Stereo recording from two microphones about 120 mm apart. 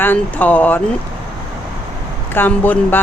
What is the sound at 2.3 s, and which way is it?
Speech, 15° left (ahead or behind).